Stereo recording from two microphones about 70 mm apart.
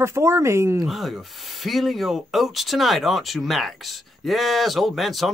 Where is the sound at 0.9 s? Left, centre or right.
Centre.